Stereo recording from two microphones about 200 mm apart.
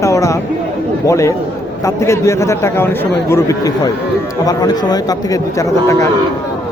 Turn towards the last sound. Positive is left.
turn(degrees=15)  # may be behind; listen again after turning